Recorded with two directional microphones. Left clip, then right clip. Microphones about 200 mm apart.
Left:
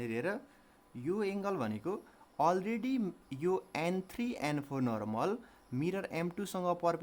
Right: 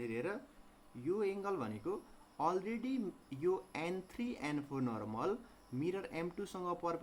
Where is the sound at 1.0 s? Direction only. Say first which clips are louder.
Left 2 dB; 50° left (ahead or behind).